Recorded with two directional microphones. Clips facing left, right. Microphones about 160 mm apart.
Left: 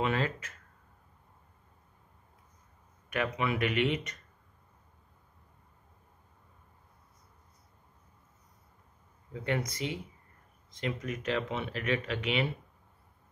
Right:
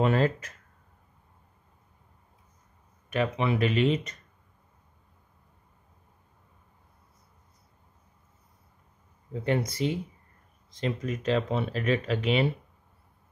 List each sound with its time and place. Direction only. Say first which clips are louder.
0.0 s speech: right 6 dB; 40° right (ahead or behind)
3.1 s speech: right 4 dB; 25° right (ahead or behind)
9.3 s speech: right 5 dB; 30° right (ahead or behind)